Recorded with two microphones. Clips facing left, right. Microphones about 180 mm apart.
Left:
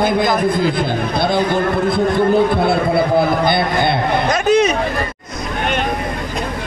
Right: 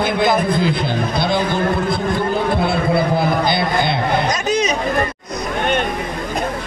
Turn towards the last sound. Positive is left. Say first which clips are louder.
# left 4 dB
turn(degrees=60)  # may be behind; listen again after turning